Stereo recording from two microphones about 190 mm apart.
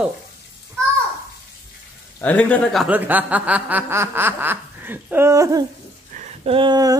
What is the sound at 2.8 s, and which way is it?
Snicker, 10° right (ahead or behind).